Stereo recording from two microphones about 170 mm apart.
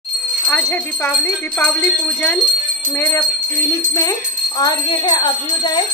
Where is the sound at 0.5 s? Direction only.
10° left (ahead or behind).